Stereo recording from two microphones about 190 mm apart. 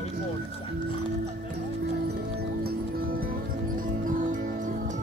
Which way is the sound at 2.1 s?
55° right (ahead or behind).